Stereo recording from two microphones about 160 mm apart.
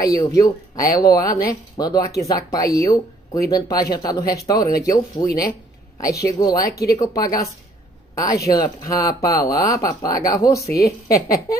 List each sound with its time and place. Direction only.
0.0 s speech: 20° left (ahead or behind)
8.1 s speech: 20° left (ahead or behind)
10.7 s a woman's voice: 70° left (ahead or behind)
11.1 s speech: 20° left (ahead or behind)